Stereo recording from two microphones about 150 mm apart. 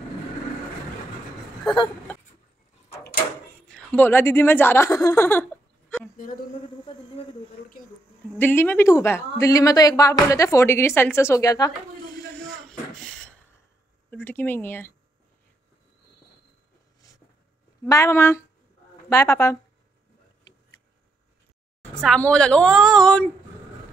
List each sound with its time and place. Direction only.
3.6 s speech: 5° left (ahead or behind)
5.4 s a sound: 10° left (ahead or behind)
6.1 s speech: 65° left (ahead or behind)
6.9 s a sound: 35° left (ahead or behind)
8.4 s a woman's voice: 15° left (ahead or behind)
12.4 s a sound: 5° left (ahead or behind)
14.1 s speech: 10° left (ahead or behind)
17.8 s a woman's voice: 20° left (ahead or behind)
22.0 s a woman's voice: 5° left (ahead or behind)